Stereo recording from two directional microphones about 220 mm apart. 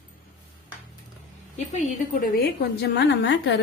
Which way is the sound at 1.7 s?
35° left (ahead or behind).